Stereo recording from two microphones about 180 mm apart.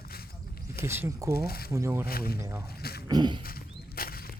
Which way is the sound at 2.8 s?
60° left (ahead or behind).